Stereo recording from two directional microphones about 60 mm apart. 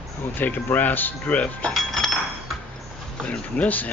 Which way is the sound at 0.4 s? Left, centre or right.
Left.